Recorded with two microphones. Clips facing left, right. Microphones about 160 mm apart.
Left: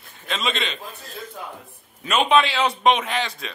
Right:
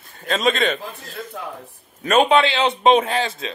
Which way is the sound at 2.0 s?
50° right (ahead or behind).